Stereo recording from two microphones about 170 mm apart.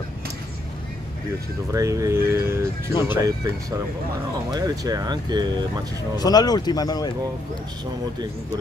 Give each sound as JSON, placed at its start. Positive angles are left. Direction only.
{"t": 1.7, "sound": "speech", "side_deg": -20}
{"t": 4.5, "sound": "speech", "side_deg": -20}
{"t": 6.1, "sound": "speech", "side_deg": 20}